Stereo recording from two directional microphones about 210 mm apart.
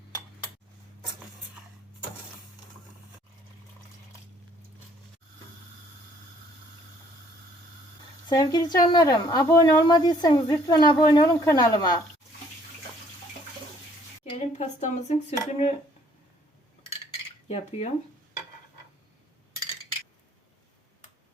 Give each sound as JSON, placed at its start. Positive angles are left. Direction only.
{"t": 8.3, "sound": "a woman's voice", "side_deg": 20}
{"t": 14.3, "sound": "speech", "side_deg": 30}
{"t": 17.5, "sound": "speech", "side_deg": 30}